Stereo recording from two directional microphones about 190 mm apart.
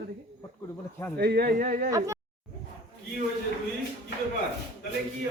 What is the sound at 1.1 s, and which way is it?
Speech, 60° right (ahead or behind).